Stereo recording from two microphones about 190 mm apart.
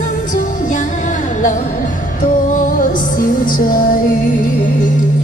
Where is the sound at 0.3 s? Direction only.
45° left (ahead or behind).